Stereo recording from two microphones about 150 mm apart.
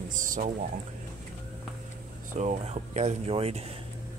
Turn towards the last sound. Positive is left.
turn(degrees=-40)  # may be behind; listen again after turning